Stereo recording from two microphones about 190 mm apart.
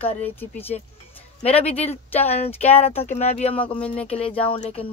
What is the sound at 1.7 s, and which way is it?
Speech, 35° left (ahead or behind).